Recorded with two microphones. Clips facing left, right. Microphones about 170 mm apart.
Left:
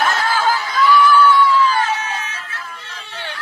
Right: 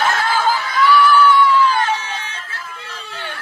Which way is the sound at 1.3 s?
10° left (ahead or behind).